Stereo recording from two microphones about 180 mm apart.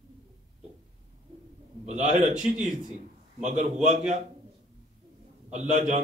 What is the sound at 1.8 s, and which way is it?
A man's voice, 40° right (ahead or behind).